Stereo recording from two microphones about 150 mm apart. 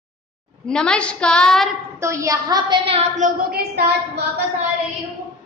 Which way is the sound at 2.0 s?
20° right (ahead or behind).